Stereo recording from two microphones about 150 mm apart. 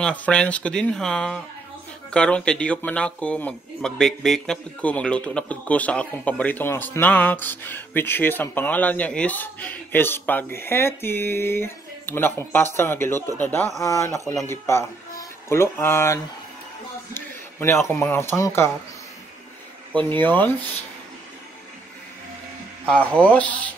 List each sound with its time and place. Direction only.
0.0 s speech: 10° left (ahead or behind)
17.1 s a sound: 15° left (ahead or behind)
18.1 s speech: 15° left (ahead or behind)
20.2 s speech: 10° left (ahead or behind)
22.8 s speech: 10° left (ahead or behind)